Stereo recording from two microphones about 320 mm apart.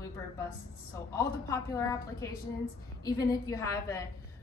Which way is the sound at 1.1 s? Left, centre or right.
Centre.